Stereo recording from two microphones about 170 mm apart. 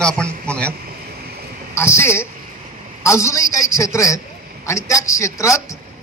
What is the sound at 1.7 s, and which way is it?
A man's voice, 15° left (ahead or behind).